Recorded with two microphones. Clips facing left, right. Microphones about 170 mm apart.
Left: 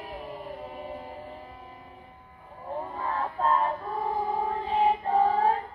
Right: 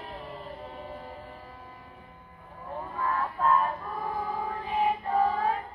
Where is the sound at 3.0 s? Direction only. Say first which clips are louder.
Right 1 dB; 30° left (ahead or behind).